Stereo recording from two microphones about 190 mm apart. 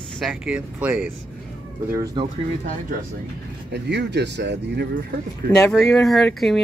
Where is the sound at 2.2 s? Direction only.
20° right (ahead or behind).